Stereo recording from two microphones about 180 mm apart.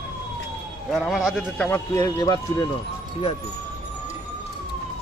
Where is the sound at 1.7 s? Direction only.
20° left (ahead or behind).